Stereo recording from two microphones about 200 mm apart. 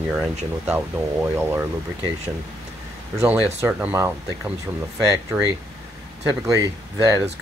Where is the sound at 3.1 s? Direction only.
5° right (ahead or behind).